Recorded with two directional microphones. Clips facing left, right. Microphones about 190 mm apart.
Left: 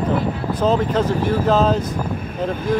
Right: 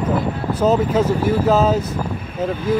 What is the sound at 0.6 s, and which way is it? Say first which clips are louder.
Speech: right 2 dB; 5° right (ahead or behind).